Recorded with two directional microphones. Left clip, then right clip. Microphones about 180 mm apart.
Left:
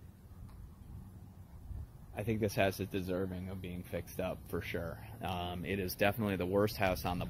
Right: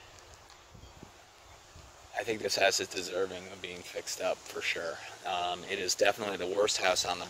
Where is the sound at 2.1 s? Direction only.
40° right (ahead or behind).